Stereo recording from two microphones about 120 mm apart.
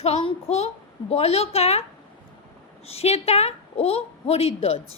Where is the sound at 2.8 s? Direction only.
60° left (ahead or behind).